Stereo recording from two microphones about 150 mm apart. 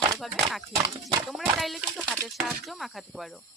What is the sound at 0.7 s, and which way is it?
Speech, 20° right (ahead or behind).